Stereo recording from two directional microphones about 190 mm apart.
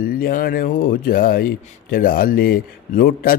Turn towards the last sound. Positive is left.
turn(degrees=50)  # may be behind; listen again after turning